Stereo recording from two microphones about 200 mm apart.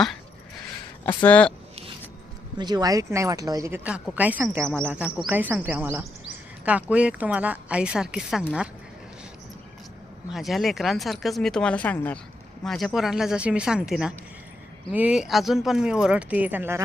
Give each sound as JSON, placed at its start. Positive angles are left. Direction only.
{"t": 1.0, "sound": "speech", "side_deg": 10}
{"t": 2.6, "sound": "speech", "side_deg": -20}
{"t": 10.3, "sound": "speech", "side_deg": 0}